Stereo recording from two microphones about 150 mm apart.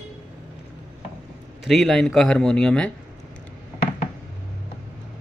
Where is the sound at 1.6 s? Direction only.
Centre (ahead or behind).